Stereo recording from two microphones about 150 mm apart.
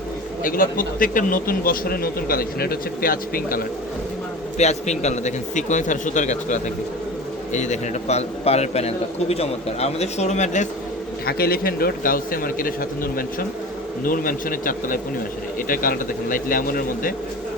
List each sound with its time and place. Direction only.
0.4 s a man's voice: 70° left (ahead or behind)
4.5 s a man's voice: 50° left (ahead or behind)
11.3 s a man's voice: 90° left; by 17.2 s 70° left (ahead or behind)